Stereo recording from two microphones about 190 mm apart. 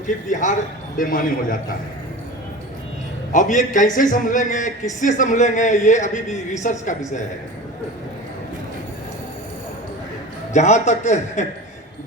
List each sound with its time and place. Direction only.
0.3 s a man's voice: 40° left (ahead or behind)
3.3 s a man's voice: 40° left (ahead or behind)
10.5 s a man's voice: 35° left (ahead or behind)